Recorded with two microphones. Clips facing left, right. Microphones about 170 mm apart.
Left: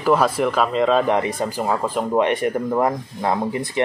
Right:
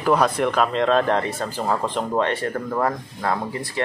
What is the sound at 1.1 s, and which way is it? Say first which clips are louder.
Speech: left 2 dB; 15° left (ahead or behind).